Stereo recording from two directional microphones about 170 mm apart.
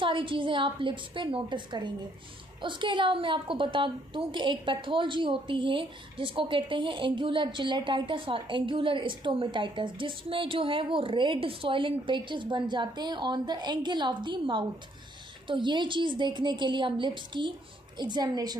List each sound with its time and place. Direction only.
0.0 s a woman's voice: 30° right (ahead or behind)